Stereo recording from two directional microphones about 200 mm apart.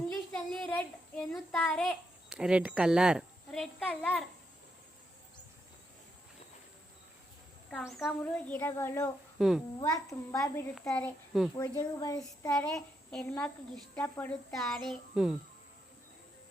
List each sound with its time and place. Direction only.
0.3 s a child's voice: 5° left (ahead or behind)
7.7 s a child's voice: centre (ahead or behind)
9.4 s a child's voice: centre (ahead or behind)
10.4 s a child's voice: 10° left (ahead or behind)
11.8 s speech: 20° left (ahead or behind)
12.5 s a child's voice: 5° left (ahead or behind)